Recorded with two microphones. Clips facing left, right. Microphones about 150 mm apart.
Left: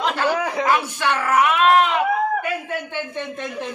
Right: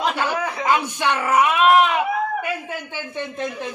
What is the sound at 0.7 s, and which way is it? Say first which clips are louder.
A man's voice: right 3 dB; 20° right (ahead or behind).